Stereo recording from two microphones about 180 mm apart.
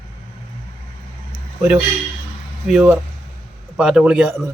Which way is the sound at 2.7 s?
5° right (ahead or behind).